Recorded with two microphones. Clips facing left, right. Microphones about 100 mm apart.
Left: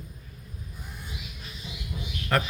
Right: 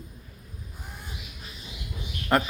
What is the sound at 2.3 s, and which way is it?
Speech, 20° right (ahead or behind).